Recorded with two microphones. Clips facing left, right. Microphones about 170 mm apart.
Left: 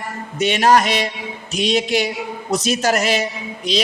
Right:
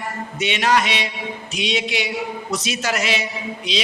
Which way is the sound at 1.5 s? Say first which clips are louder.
Left 6 dB; 40° left (ahead or behind).